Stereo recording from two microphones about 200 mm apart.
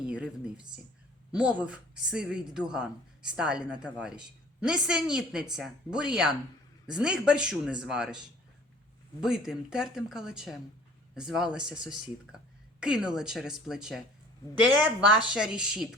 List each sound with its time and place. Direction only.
0.0 s a woman's voice: 5° right (ahead or behind)
9.2 s a woman's voice: 5° right (ahead or behind)
15.3 s a woman's voice: 5° right (ahead or behind)